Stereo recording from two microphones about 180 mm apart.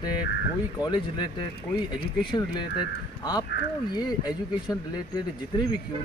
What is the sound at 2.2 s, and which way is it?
Speech, 25° left (ahead or behind).